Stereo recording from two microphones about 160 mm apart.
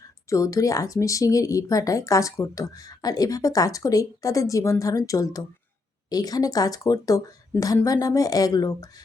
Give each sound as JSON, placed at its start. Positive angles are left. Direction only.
{"t": 0.3, "sound": "speech", "side_deg": 20}